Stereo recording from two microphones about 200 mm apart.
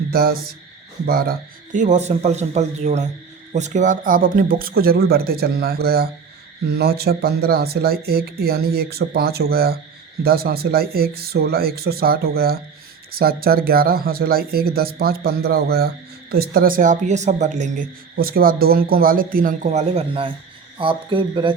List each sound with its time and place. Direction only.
0.1 s speech: 50° right (ahead or behind); by 21.5 s 25° right (ahead or behind)